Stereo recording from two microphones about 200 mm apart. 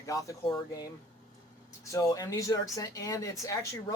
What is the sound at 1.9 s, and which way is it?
Speech, 15° left (ahead or behind).